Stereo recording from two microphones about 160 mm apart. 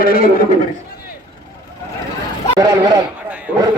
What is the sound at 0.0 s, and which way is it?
Speech, 65° left (ahead or behind).